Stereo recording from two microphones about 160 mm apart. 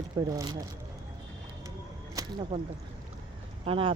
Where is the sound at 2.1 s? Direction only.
25° right (ahead or behind).